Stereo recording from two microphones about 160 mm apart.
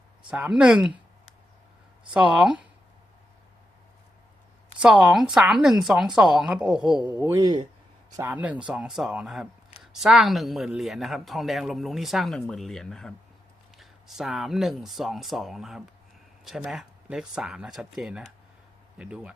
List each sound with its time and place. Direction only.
0.3 s speech: 5° right (ahead or behind)
2.1 s speech: 5° right (ahead or behind)
4.8 s speech: 5° right (ahead or behind)
7.2 s speech: 20° right (ahead or behind)
8.1 s speech: 10° right (ahead or behind)